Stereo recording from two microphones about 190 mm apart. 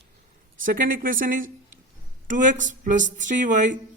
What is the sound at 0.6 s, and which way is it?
Speech, 45° right (ahead or behind).